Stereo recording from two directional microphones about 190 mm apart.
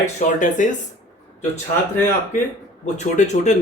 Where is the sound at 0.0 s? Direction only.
40° left (ahead or behind).